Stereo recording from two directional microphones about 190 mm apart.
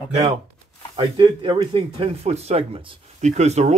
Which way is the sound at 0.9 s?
25° right (ahead or behind).